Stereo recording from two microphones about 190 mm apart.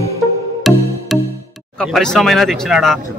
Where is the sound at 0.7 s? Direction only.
Centre (ahead or behind).